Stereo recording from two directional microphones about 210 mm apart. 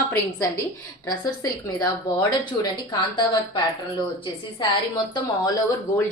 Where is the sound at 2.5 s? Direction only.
20° left (ahead or behind).